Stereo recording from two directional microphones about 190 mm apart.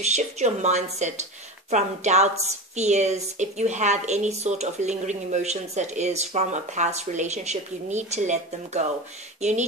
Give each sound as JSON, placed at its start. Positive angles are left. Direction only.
{"t": 0.0, "sound": "a woman's voice", "side_deg": -35}